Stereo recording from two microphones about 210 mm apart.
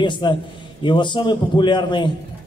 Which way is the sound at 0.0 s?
20° left (ahead or behind).